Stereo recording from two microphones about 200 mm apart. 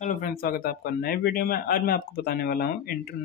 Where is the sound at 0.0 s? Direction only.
45° left (ahead or behind).